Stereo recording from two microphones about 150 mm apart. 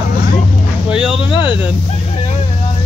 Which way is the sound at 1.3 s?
30° left (ahead or behind).